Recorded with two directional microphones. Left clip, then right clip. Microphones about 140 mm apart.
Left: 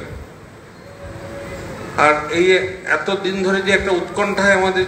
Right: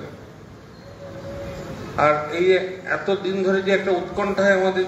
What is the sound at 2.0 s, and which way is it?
A man's voice, 40° left (ahead or behind).